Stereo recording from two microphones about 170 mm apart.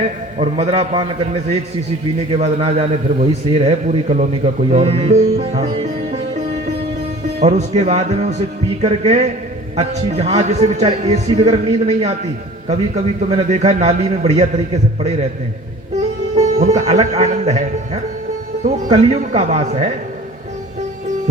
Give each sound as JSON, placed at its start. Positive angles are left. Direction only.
{"t": 0.3, "sound": "a man's voice", "side_deg": -35}
{"t": 2.3, "sound": "a man's voice", "side_deg": -35}
{"t": 5.8, "sound": "sitar", "side_deg": -40}
{"t": 7.4, "sound": "a man's voice", "side_deg": -40}
{"t": 16.3, "sound": "a man's voice", "side_deg": -40}